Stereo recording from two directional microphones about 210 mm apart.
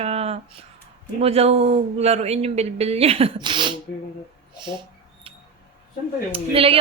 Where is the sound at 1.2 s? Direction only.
30° right (ahead or behind).